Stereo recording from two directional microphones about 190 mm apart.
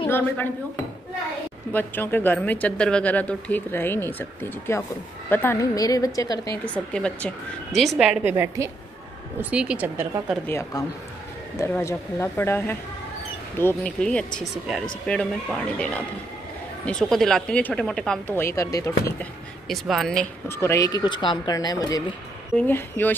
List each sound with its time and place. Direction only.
1.7 s speech: 10° left (ahead or behind)
6.6 s speech: 5° left (ahead or behind); by 10.2 s 10° right (ahead or behind)
10.3 s speech: 10° left (ahead or behind)
19.7 s speech: centre (ahead or behind)